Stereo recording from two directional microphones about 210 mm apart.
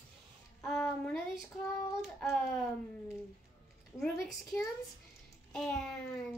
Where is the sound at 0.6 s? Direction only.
Centre (ahead or behind).